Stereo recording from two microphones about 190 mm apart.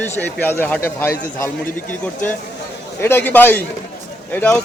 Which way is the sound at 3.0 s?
10° left (ahead or behind).